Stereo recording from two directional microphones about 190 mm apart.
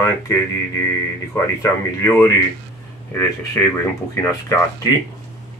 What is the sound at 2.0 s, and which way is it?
Speech, 15° left (ahead or behind).